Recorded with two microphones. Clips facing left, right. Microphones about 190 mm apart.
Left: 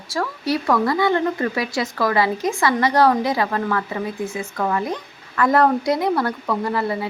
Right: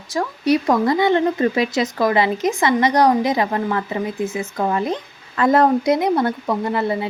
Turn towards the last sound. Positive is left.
turn(degrees=-20)  # may be behind; listen again after turning